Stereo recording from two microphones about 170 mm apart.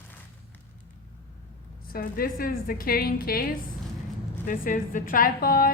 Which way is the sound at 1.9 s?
60° left (ahead or behind).